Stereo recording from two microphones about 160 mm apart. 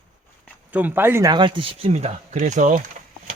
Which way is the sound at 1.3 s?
30° right (ahead or behind).